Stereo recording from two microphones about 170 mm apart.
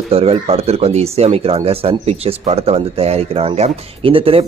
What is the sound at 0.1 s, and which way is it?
Speech, 35° right (ahead or behind).